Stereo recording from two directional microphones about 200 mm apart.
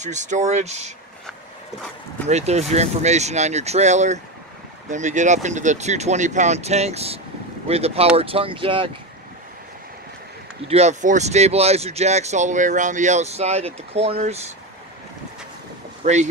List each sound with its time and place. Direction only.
0.0 s speech: 35° right (ahead or behind)
2.2 s speech: 35° right (ahead or behind)
10.7 s speech: 35° right (ahead or behind)
16.0 s speech: 35° right (ahead or behind)